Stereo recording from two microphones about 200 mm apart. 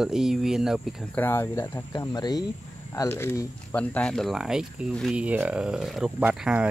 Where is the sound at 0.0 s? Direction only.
Centre (ahead or behind).